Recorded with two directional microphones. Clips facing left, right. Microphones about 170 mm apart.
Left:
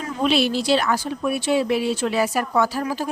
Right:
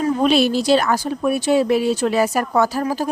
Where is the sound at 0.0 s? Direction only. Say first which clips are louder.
Right 5 dB; 45° right (ahead or behind).